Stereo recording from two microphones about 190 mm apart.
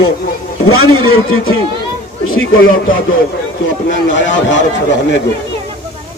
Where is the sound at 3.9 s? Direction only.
75° left (ahead or behind).